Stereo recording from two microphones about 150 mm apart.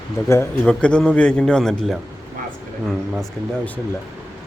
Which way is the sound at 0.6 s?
5° left (ahead or behind).